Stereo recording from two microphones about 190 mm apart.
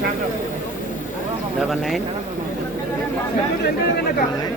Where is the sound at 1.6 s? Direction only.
Centre (ahead or behind).